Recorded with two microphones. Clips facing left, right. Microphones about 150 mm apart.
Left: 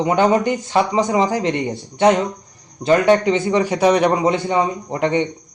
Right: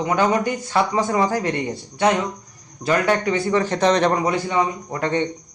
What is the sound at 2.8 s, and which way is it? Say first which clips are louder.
A man's voice: left 5 dB; 25° left (ahead or behind).